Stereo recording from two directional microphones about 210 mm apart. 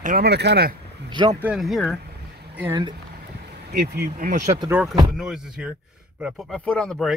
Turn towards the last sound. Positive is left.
turn(degrees=5)  # may be behind; listen again after turning